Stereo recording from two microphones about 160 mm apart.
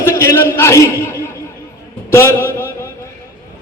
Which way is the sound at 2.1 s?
15° left (ahead or behind).